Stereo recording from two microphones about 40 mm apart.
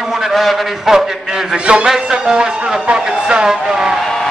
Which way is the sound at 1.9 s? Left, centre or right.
Centre.